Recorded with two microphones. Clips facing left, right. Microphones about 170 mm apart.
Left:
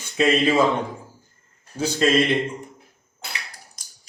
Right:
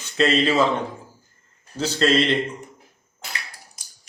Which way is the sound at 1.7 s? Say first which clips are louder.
Even; 10° left (ahead or behind).